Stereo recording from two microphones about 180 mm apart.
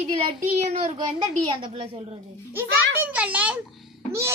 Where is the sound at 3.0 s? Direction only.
10° right (ahead or behind).